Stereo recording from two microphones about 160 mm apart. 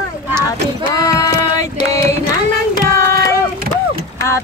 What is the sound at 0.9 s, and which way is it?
Music, 20° left (ahead or behind).